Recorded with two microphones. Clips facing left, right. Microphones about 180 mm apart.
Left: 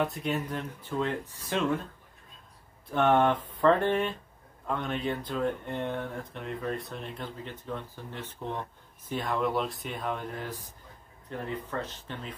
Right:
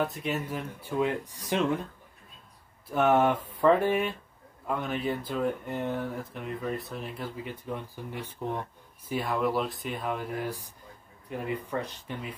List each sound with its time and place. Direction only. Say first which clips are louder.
0.0 s speech: even; centre (ahead or behind); by 1.8 s 15° right (ahead or behind)
2.9 s speech: even; 5° right (ahead or behind)